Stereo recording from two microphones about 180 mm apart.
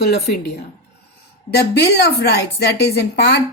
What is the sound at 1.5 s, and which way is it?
A woman's voice, 60° left (ahead or behind).